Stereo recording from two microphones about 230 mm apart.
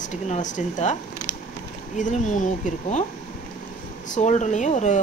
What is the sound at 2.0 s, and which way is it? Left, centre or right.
Speech, left.